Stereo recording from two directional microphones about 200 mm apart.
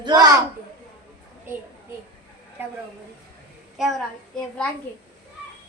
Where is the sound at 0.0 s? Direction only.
20° right (ahead or behind).